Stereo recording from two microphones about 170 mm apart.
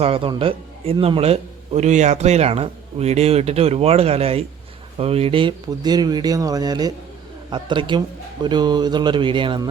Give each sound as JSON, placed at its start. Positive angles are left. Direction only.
{"t": 0.0, "sound": "a man's voice", "side_deg": -35}